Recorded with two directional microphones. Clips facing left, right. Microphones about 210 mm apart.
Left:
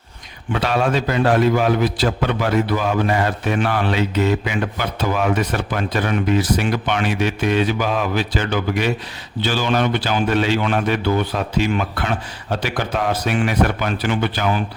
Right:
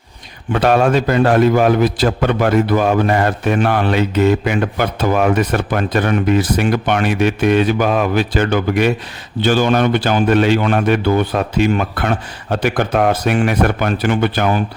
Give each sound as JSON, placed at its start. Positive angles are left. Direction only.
{"t": 0.5, "sound": "a man's voice", "side_deg": -50}